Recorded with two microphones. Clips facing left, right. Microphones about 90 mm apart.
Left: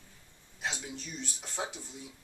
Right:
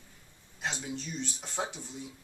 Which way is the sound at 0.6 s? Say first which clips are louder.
Right 2 dB; centre (ahead or behind).